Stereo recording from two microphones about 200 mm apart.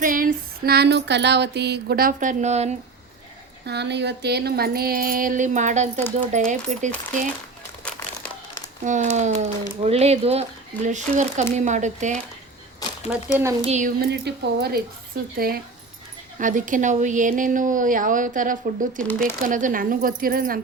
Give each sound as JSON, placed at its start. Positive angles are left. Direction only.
{"t": 0.0, "sound": "female singing", "side_deg": -45}
{"t": 3.7, "sound": "female singing", "side_deg": -60}
{"t": 6.3, "sound": "speech", "side_deg": -40}
{"t": 8.8, "sound": "speech", "side_deg": -35}
{"t": 12.8, "sound": "a sound", "side_deg": 20}
{"t": 13.7, "sound": "speech", "side_deg": -35}
{"t": 14.0, "sound": "female singing", "side_deg": -55}
{"t": 16.4, "sound": "speech", "side_deg": -40}
{"t": 19.2, "sound": "female singing", "side_deg": -40}